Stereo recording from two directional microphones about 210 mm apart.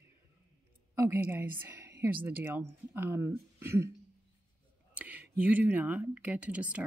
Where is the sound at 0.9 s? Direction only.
10° right (ahead or behind).